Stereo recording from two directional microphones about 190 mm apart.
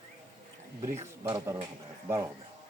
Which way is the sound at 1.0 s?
15° right (ahead or behind).